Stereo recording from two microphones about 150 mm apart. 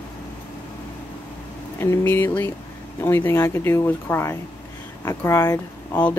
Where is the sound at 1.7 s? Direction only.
15° left (ahead or behind).